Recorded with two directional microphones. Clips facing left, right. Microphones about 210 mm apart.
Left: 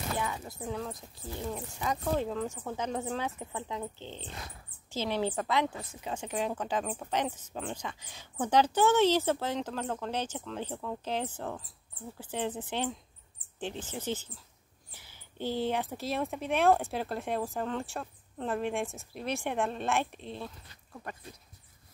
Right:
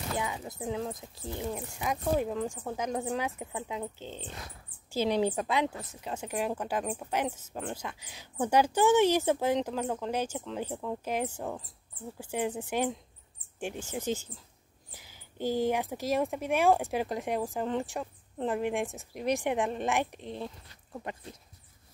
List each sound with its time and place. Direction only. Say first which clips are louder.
0.2 s speech: right 1 dB; 15° right (ahead or behind)
4.9 s speech: right 4 dB; 15° right (ahead or behind)